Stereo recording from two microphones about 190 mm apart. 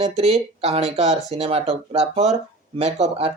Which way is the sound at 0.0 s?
30° right (ahead or behind).